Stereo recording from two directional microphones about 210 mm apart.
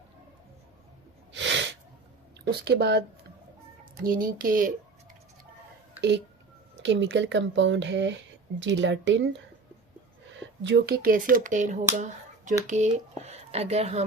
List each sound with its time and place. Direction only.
1.3 s sneeze: 60° right (ahead or behind)
2.4 s speech: 50° right (ahead or behind)
4.0 s speech: 40° right (ahead or behind)
6.0 s speech: 55° right (ahead or behind)
10.6 s speech: 55° right (ahead or behind); by 11.8 s 35° right (ahead or behind)
11.9 s finger snapping: 35° right (ahead or behind)
12.6 s speech: 35° right (ahead or behind)